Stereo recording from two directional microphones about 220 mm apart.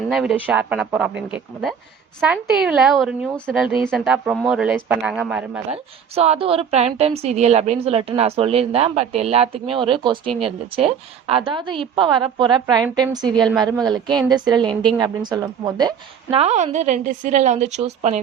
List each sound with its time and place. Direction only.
0.1 s speech: centre (ahead or behind)
5.7 s a woman's voice: 25° right (ahead or behind)